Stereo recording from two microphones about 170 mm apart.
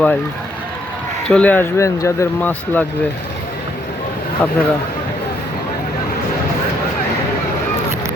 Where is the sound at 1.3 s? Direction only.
10° left (ahead or behind).